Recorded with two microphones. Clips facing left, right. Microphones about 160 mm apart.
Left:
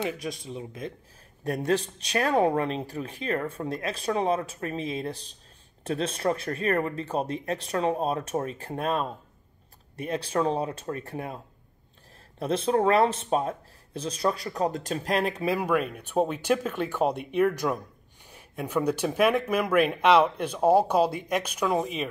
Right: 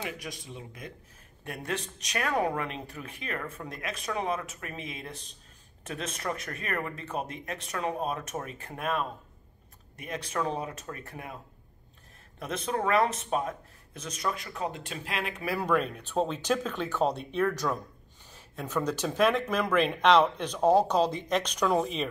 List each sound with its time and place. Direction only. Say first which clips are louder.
0.0 s speech: left 7 dB; 20° left (ahead or behind)
1.4 s speech: left 9 dB; 35° left (ahead or behind)
12.4 s speech: left 7 dB; 30° left (ahead or behind)
15.6 s speech: left 2 dB; 10° left (ahead or behind)